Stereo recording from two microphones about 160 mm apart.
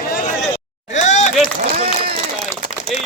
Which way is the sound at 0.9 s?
50° left (ahead or behind).